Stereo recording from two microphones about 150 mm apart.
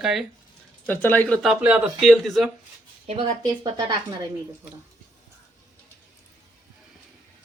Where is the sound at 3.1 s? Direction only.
35° right (ahead or behind).